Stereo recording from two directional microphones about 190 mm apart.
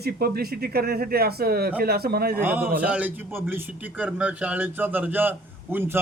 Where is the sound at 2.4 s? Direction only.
10° right (ahead or behind).